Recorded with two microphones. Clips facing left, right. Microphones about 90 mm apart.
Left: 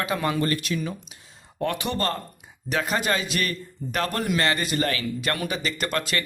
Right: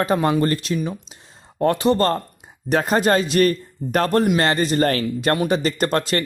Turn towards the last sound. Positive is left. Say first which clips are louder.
# right 7 dB
turn(degrees=-40)  # may be behind; listen again after turning